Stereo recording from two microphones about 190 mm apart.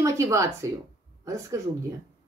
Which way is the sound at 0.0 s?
15° right (ahead or behind).